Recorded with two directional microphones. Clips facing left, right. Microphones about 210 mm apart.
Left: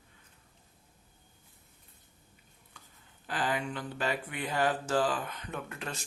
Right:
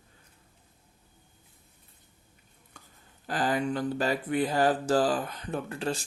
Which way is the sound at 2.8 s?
45° right (ahead or behind).